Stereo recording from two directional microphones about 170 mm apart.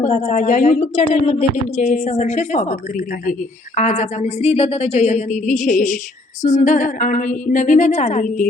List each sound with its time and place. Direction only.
0.0 s a woman's voice: 45° left (ahead or behind)